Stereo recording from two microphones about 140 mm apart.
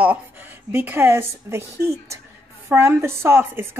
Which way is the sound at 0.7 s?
15° right (ahead or behind).